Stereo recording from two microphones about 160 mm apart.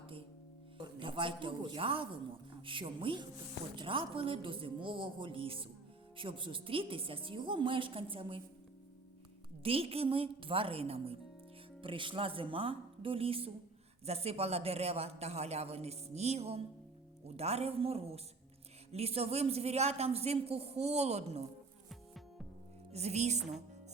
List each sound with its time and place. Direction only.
0.8 s a man's voice: 30° right (ahead or behind)
9.6 s a man's voice: 35° right (ahead or behind)
21.8 s music: centre (ahead or behind)
22.9 s a woman's voice: 40° right (ahead or behind)